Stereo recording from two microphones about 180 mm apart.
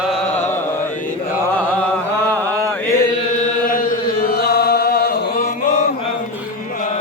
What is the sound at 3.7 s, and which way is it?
Chant, 50° left (ahead or behind).